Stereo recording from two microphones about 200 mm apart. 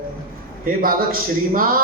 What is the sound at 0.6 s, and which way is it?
A man's voice, 45° right (ahead or behind).